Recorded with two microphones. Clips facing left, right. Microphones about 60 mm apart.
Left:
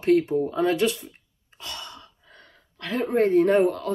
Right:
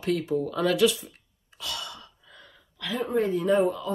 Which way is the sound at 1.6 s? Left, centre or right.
Left.